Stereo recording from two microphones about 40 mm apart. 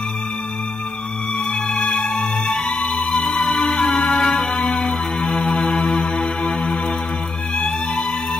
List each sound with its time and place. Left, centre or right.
1.5 s music: centre
1.9 s music: left
2.1 s music: centre
2.6 s music: left
3.1 s music: left
4.5 s music: left
5.9 s music: centre